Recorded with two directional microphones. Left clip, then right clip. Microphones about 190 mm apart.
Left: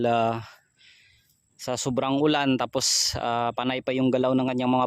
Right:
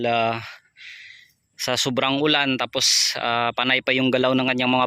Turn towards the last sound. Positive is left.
turn(degrees=10)  # may be behind; listen again after turning